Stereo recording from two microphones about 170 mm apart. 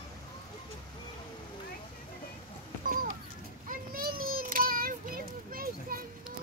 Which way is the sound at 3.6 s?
60° right (ahead or behind).